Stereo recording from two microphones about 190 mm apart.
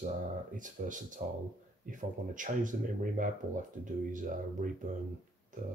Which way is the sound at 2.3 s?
45° right (ahead or behind).